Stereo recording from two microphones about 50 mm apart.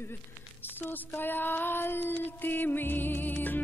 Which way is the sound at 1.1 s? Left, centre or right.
Left.